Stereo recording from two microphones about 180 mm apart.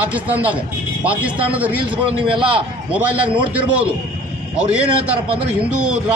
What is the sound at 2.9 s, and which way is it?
Speech, 10° right (ahead or behind).